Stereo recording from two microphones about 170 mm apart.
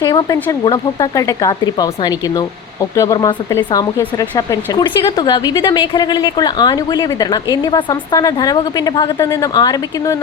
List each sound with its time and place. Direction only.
0.0 s speech: 25° left (ahead or behind)